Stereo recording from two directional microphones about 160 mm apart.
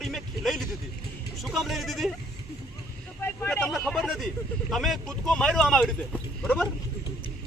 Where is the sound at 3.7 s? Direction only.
5° left (ahead or behind).